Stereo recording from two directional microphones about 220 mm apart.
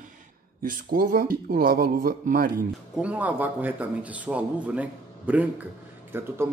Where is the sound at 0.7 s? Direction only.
40° right (ahead or behind).